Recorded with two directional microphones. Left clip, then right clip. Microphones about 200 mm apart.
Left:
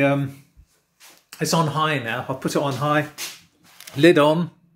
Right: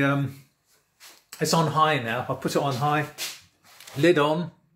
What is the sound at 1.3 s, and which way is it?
Speech, 10° left (ahead or behind).